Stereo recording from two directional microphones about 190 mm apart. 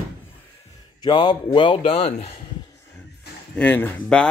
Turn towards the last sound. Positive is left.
turn(degrees=10)  # may be behind; listen again after turning